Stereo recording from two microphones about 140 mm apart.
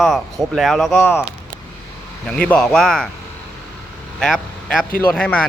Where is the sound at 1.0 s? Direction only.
15° left (ahead or behind).